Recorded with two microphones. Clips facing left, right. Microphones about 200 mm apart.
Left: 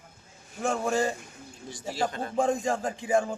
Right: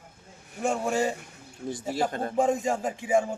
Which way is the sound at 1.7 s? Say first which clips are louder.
Right 3 dB; 55° right (ahead or behind).